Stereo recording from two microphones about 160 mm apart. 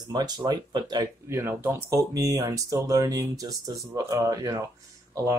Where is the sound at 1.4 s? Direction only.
15° right (ahead or behind).